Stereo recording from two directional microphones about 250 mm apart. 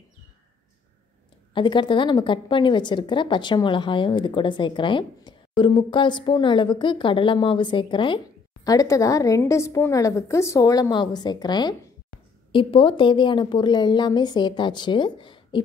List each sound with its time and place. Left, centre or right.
1.5 s a woman's voice: centre